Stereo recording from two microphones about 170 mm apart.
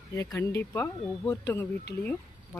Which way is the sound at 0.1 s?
15° left (ahead or behind).